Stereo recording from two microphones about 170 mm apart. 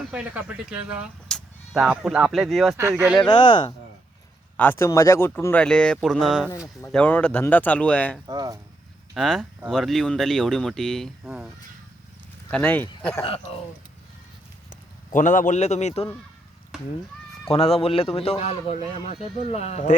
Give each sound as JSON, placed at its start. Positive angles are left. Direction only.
{"t": 0.1, "sound": "speech", "side_deg": -10}
{"t": 2.7, "sound": "speech", "side_deg": -15}
{"t": 3.2, "sound": "speech", "side_deg": 25}
{"t": 4.5, "sound": "speech", "side_deg": 10}
{"t": 8.3, "sound": "speech", "side_deg": -25}
{"t": 9.1, "sound": "speech", "side_deg": 0}
{"t": 12.5, "sound": "speech", "side_deg": 10}
{"t": 13.2, "sound": "speech", "side_deg": 35}
{"t": 15.1, "sound": "speech", "side_deg": 50}
{"t": 17.5, "sound": "speech", "side_deg": 35}